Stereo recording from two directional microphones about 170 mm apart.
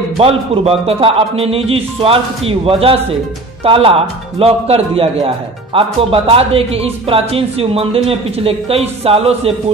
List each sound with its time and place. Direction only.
0.2 s a man's voice: 35° right (ahead or behind)